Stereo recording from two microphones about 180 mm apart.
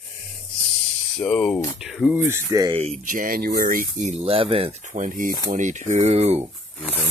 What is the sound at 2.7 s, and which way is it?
Speech, 35° right (ahead or behind).